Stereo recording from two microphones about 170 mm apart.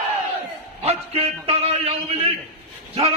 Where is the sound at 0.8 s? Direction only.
35° right (ahead or behind).